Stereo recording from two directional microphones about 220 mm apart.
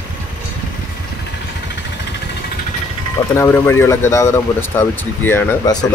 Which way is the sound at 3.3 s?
10° left (ahead or behind).